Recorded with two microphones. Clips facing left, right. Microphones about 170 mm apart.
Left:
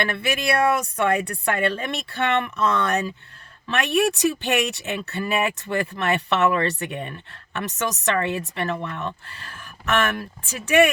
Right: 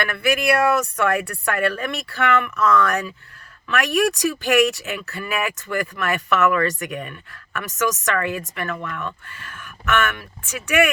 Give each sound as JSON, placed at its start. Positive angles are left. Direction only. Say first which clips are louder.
{"t": 0.0, "sound": "speech", "louder": "right 3 dB", "side_deg": 25}